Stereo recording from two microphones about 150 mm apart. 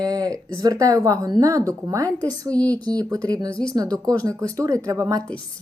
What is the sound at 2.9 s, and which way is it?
Speech, 25° right (ahead or behind).